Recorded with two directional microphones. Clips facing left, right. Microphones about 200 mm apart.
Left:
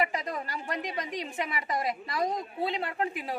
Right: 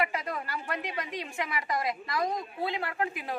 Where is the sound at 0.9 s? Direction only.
25° left (ahead or behind).